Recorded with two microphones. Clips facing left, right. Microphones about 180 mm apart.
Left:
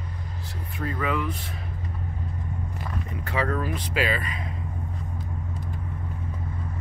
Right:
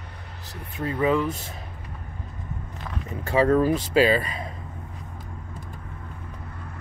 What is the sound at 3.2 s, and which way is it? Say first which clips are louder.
Speech: right 9 dB; 35° right (ahead or behind).